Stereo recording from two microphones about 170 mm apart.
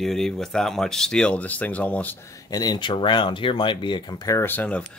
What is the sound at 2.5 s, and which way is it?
Speech, 20° left (ahead or behind).